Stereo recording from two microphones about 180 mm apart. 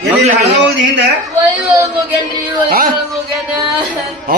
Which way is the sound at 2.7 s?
50° right (ahead or behind).